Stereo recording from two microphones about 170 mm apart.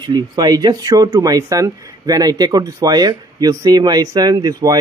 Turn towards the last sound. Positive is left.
turn(degrees=-25)  # may be behind; listen again after turning